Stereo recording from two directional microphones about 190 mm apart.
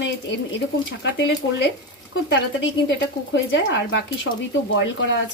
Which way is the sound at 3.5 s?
70° left (ahead or behind).